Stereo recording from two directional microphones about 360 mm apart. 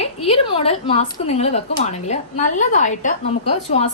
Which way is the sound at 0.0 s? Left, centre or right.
Centre.